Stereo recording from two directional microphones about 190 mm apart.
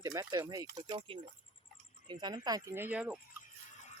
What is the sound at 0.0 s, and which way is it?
Speech, 20° right (ahead or behind).